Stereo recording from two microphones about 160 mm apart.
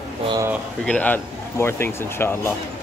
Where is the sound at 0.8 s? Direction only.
5° left (ahead or behind).